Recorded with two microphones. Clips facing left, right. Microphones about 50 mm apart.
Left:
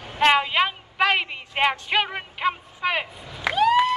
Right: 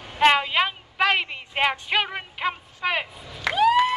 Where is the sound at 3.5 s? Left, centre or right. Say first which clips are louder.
Even; centre.